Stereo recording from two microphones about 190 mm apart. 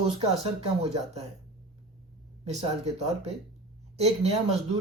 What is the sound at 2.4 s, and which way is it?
Speech, 35° right (ahead or behind).